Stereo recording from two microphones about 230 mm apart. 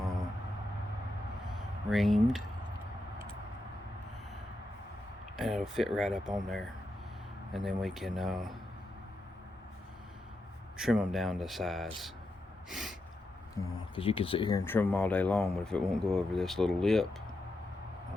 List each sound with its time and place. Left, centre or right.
1.9 s speech: centre
5.4 s speech: centre
10.8 s speech: centre
13.6 s speech: centre